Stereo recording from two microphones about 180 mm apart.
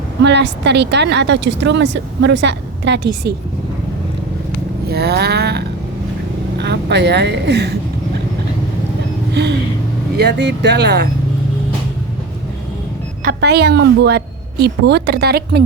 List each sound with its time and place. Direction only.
0.2 s speech: 75° right (ahead or behind)
4.9 s a sound: 65° right (ahead or behind)
6.6 s speech: 70° right (ahead or behind)
9.3 s a sound: 70° right (ahead or behind)
10.2 s speech: 70° right (ahead or behind)
13.4 s a woman's voice: 70° right (ahead or behind)